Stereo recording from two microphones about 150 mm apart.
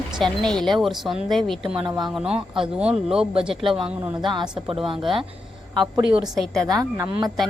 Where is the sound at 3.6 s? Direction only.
35° right (ahead or behind).